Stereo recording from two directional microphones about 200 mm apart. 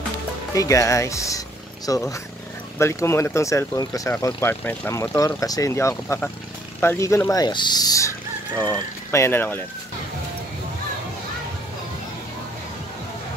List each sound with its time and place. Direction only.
0.6 s speech: 15° left (ahead or behind)